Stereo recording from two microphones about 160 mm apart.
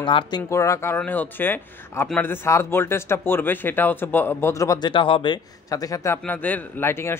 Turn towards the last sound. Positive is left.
turn(degrees=15)  # may be behind; listen again after turning